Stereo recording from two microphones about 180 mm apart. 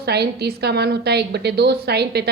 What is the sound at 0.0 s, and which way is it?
A woman's voice, 65° right (ahead or behind).